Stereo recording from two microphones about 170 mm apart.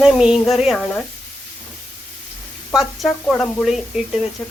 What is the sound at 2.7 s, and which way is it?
A woman's voice, centre (ahead or behind).